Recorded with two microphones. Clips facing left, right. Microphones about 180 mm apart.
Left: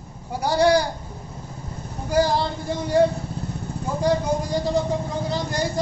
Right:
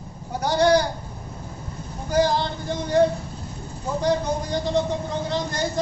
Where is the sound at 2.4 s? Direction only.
5° left (ahead or behind).